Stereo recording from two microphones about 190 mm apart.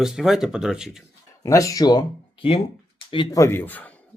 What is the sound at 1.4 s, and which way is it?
Speech, 15° left (ahead or behind).